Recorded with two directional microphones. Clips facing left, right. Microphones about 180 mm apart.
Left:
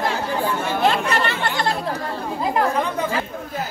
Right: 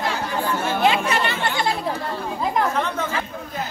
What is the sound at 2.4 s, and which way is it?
Chatter, 10° left (ahead or behind).